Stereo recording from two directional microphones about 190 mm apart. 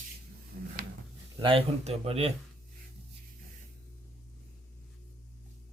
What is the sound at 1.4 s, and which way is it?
Speech, 30° right (ahead or behind).